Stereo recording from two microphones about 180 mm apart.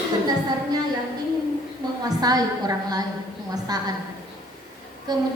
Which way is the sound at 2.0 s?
20° right (ahead or behind).